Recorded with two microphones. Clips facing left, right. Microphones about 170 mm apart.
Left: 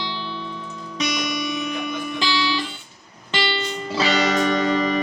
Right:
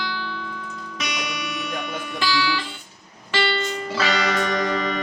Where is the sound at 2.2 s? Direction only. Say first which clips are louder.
Right 1 dB; 20° left (ahead or behind).